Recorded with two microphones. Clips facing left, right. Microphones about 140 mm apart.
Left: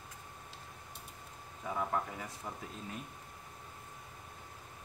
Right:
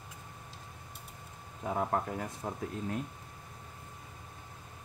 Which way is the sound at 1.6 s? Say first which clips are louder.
Right 4 dB; 45° right (ahead or behind).